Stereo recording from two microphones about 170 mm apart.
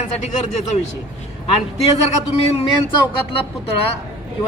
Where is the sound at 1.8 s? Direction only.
40° left (ahead or behind).